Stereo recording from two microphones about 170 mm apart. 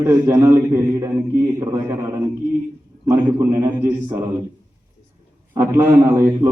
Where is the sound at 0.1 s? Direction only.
15° right (ahead or behind).